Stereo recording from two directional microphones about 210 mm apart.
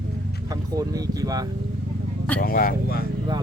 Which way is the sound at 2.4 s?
45° left (ahead or behind).